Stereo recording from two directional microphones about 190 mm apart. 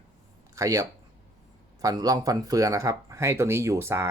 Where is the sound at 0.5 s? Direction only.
15° right (ahead or behind).